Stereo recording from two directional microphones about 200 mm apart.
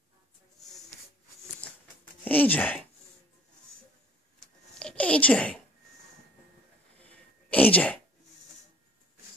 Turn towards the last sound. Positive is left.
turn(degrees=5)  # may be behind; listen again after turning